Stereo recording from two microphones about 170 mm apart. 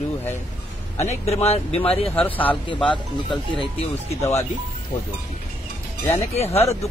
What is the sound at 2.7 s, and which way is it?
Speech, 30° left (ahead or behind).